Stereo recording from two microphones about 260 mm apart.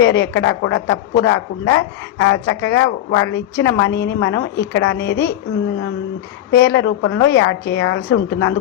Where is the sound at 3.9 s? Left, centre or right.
Left.